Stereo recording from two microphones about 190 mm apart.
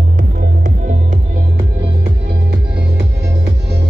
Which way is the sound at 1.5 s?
25° right (ahead or behind).